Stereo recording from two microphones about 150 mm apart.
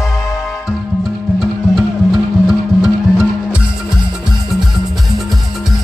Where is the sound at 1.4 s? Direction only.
Centre (ahead or behind).